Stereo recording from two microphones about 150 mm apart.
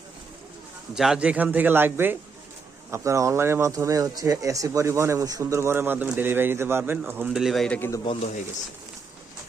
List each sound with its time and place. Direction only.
0.9 s speech: 5° right (ahead or behind)
7.8 s a man's voice: 20° left (ahead or behind)